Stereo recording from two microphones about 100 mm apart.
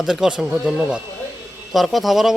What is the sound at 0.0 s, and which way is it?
Speech, 5° right (ahead or behind).